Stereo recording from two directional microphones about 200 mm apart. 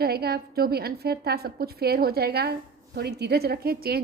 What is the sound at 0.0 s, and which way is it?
Speech, 50° right (ahead or behind).